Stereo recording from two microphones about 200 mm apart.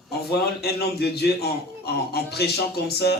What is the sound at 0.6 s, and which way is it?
Speech, 55° left (ahead or behind).